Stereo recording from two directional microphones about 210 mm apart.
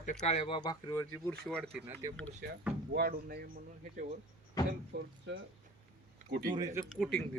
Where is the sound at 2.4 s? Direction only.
45° right (ahead or behind).